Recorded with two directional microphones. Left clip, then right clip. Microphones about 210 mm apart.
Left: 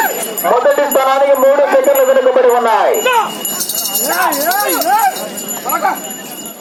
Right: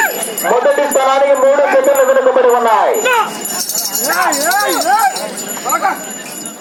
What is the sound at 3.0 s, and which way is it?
Wind chime, 50° right (ahead or behind).